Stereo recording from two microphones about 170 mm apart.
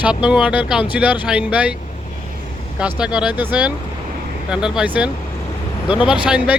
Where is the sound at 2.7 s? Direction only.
5° right (ahead or behind).